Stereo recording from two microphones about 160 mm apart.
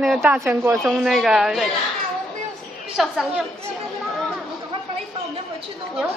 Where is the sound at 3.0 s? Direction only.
Centre (ahead or behind).